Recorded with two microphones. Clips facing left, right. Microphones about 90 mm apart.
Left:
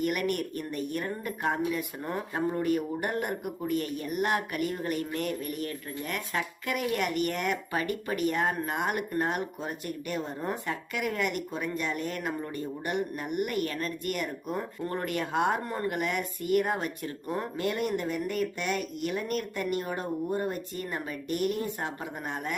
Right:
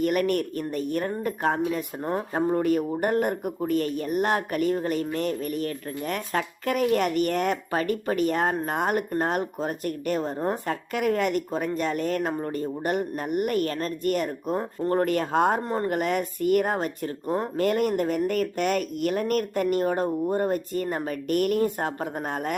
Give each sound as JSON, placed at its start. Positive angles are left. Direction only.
{"t": 0.0, "sound": "speech", "side_deg": -40}
{"t": 17.6, "sound": "speech", "side_deg": -50}